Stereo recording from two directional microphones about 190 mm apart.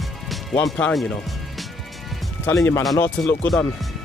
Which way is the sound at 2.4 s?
15° left (ahead or behind).